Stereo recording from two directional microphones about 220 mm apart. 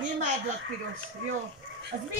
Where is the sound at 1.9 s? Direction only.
35° right (ahead or behind).